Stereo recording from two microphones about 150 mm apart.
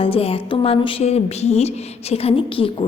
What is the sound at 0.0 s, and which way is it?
A woman's voice, 40° left (ahead or behind).